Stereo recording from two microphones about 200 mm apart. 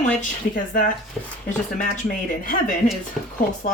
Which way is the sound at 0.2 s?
40° left (ahead or behind).